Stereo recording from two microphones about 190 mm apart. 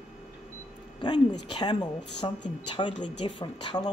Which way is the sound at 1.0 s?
25° left (ahead or behind).